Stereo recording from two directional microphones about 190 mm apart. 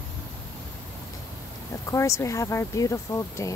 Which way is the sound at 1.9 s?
15° left (ahead or behind).